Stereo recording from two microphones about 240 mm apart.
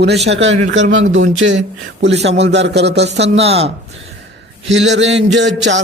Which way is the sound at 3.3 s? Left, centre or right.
Right.